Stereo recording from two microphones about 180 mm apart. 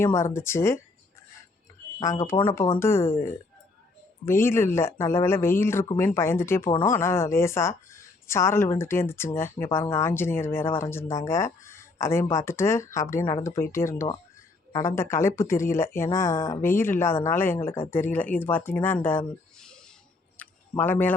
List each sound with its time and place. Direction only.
0.0 s speech: 15° left (ahead or behind)
2.0 s speech: 15° left (ahead or behind)
20.3 s a sound: 10° left (ahead or behind)